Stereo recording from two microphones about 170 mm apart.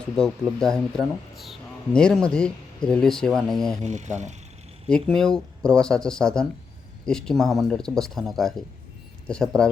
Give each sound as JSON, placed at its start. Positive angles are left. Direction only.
{"t": 0.0, "sound": "speech", "side_deg": 5}
{"t": 3.8, "sound": "speech", "side_deg": -45}
{"t": 4.9, "sound": "speech", "side_deg": 5}